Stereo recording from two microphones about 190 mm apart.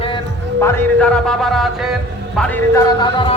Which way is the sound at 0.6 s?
10° left (ahead or behind).